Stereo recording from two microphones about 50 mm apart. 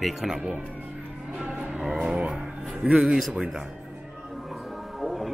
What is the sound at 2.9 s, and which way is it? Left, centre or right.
Speech, centre.